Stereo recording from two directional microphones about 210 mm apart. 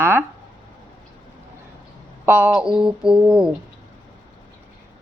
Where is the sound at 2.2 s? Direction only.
10° right (ahead or behind).